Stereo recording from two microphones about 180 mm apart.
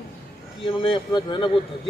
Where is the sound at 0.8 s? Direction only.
25° left (ahead or behind).